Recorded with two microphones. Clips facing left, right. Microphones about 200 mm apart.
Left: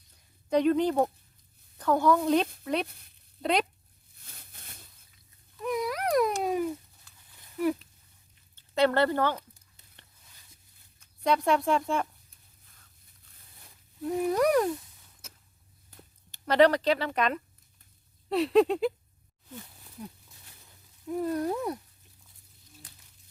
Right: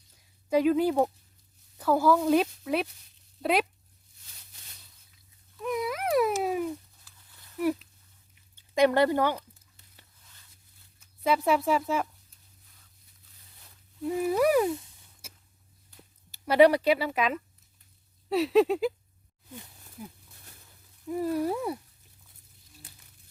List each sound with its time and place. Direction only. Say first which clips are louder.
0.5 s speech: right 1 dB; 5° right (ahead or behind)
2.8 s speech: even; 55° left (ahead or behind)
3.4 s speech: right 1 dB; 5° right (ahead or behind)
4.2 s a sound: left 5 dB; 55° left (ahead or behind)
5.1 s dog: right 2 dB; centre (ahead or behind)
7.6 s speech: even; centre (ahead or behind)
8.5 s speech: right 2 dB; 15° right (ahead or behind)
11.0 s speech: even; 5° right (ahead or behind)
14.0 s speech: right 1 dB; 5° right (ahead or behind)
15.2 s a sound: right 1 dB; 10° right (ahead or behind)
16.3 s speech: right 2 dB; 10° right (ahead or behind)
19.5 s a sound: left 1 dB; 10° right (ahead or behind)
21.1 s speech: right 1 dB; 5° right (ahead or behind)